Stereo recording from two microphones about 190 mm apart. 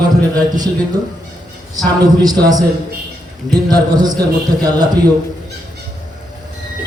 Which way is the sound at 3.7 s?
20° right (ahead or behind).